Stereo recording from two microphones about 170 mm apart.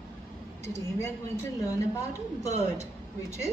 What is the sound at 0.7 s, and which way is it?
Speech, 15° left (ahead or behind).